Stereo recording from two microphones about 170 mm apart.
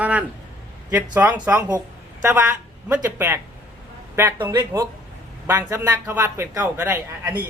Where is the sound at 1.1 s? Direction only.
10° right (ahead or behind).